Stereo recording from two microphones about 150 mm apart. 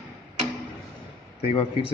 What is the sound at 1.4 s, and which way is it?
Speech, 40° left (ahead or behind).